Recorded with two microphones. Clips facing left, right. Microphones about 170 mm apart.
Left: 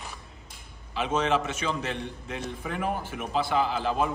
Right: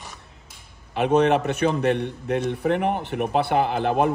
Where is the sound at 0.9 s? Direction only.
60° right (ahead or behind).